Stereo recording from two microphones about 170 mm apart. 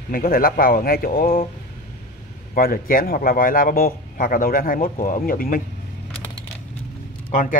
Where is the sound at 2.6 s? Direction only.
60° left (ahead or behind).